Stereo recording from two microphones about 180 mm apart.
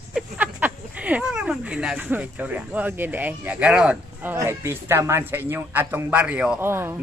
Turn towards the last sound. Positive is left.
turn(degrees=-15)  # may be behind; listen again after turning